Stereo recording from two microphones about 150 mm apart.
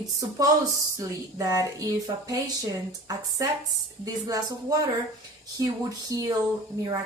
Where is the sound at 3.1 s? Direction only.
25° right (ahead or behind).